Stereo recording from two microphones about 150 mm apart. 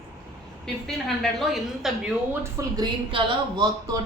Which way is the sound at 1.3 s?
Centre (ahead or behind).